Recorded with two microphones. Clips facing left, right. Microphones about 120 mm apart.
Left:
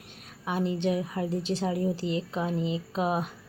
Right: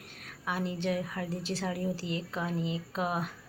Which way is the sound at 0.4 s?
25° left (ahead or behind).